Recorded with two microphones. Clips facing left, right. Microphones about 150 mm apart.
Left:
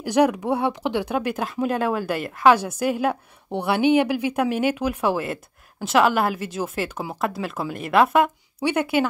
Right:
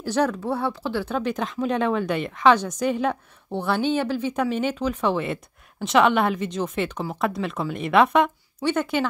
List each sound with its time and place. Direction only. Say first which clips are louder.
0.0 s speech: left 4 dB; 15° left (ahead or behind)